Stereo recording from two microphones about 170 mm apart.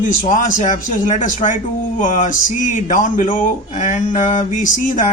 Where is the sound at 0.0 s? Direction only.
50° left (ahead or behind).